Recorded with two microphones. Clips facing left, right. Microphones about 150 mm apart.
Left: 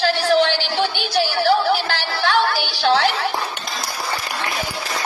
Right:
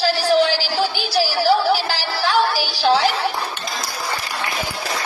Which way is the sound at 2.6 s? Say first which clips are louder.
Right 1 dB; 35° right (ahead or behind).